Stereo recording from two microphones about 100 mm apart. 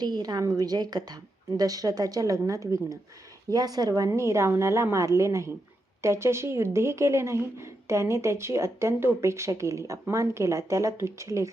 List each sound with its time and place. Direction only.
0.0 s a woman's voice: 45° right (ahead or behind)